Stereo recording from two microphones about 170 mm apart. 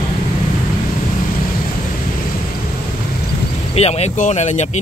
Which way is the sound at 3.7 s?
40° left (ahead or behind).